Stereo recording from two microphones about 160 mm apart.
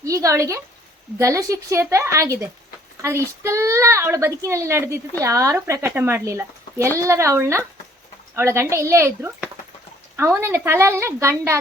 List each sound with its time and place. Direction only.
0.0 s a woman's voice: 20° right (ahead or behind)